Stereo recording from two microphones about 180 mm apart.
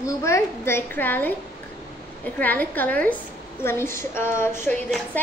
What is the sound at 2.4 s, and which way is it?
A child's voice, 10° left (ahead or behind).